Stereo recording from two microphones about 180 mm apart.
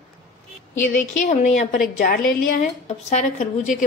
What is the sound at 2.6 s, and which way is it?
Speech, 40° left (ahead or behind).